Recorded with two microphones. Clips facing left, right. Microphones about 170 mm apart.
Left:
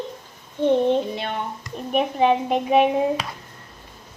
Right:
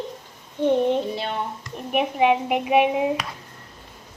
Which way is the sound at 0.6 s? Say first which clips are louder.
Left 1 dB; 10° right (ahead or behind).